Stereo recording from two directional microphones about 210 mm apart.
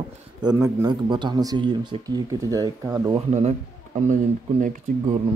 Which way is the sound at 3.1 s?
30° right (ahead or behind).